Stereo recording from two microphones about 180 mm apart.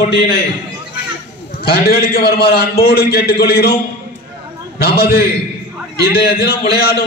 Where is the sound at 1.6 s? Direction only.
60° left (ahead or behind).